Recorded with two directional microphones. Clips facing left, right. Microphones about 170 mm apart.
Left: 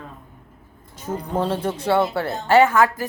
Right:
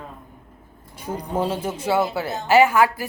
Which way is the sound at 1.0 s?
10° right (ahead or behind).